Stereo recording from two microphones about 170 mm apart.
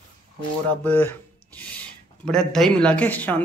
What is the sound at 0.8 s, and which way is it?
Speech, 10° left (ahead or behind).